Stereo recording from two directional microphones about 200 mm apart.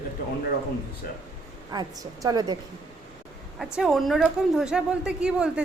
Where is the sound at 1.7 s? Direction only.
20° right (ahead or behind).